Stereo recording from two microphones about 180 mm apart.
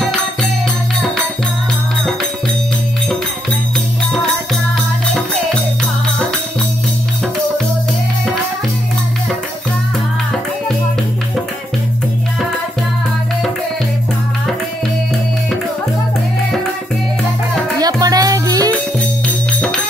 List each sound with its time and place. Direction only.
17.7 s music: 20° right (ahead or behind)